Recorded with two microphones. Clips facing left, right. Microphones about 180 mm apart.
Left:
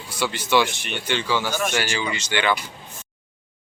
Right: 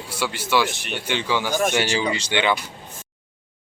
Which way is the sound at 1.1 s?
15° right (ahead or behind).